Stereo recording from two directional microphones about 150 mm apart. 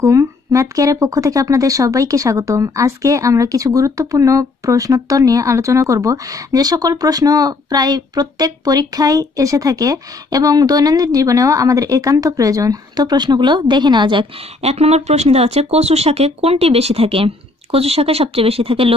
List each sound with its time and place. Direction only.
0.0 s speech: 20° right (ahead or behind)
14.6 s speech: 45° right (ahead or behind)